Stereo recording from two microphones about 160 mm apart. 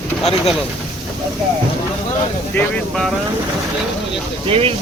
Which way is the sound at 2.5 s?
5° left (ahead or behind).